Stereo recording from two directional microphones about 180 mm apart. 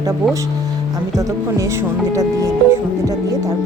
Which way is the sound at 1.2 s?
15° right (ahead or behind).